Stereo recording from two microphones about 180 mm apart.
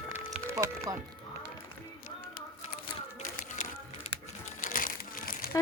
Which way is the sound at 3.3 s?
40° left (ahead or behind).